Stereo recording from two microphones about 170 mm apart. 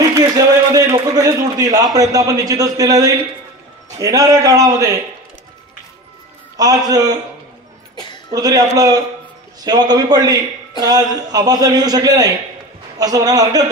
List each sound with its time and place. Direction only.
0.7 s a man's voice: 20° right (ahead or behind)
6.5 s a man's voice: 20° right (ahead or behind)
7.9 s a sound: 25° left (ahead or behind)
8.3 s a man's voice: 20° right (ahead or behind)